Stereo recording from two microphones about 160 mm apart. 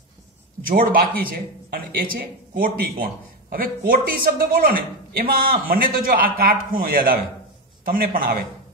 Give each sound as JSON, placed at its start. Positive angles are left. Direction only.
{"t": 0.7, "sound": "a man's voice", "side_deg": -65}